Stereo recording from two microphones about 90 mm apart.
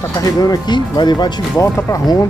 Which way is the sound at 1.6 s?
40° left (ahead or behind).